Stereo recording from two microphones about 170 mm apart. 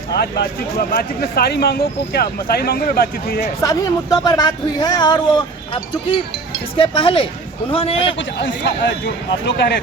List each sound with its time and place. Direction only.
0.1 s speech: 70° left (ahead or behind)
3.6 s speech: 20° left (ahead or behind)
8.2 s a man's voice: 90° left